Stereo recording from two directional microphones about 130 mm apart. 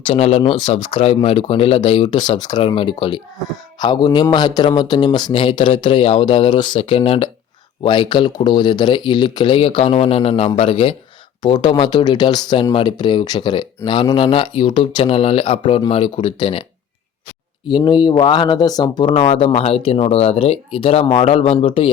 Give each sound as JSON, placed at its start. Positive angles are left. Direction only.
{"t": 0.0, "sound": "speech", "side_deg": 50}
{"t": 0.5, "sound": "speech", "side_deg": 40}
{"t": 7.8, "sound": "speech", "side_deg": 35}
{"t": 11.4, "sound": "speech", "side_deg": 35}
{"t": 17.7, "sound": "speech", "side_deg": 35}
{"t": 19.1, "sound": "speech", "side_deg": 45}